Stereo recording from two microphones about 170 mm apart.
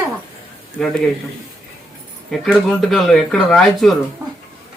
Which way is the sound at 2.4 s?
Centre (ahead or behind).